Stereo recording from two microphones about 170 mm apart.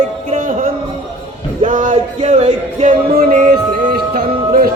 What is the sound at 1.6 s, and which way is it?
Music, 50° right (ahead or behind).